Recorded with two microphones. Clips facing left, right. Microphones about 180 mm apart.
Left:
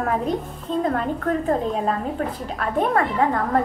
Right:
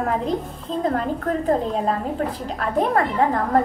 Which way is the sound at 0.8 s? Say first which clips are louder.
Right 1 dB; 35° right (ahead or behind).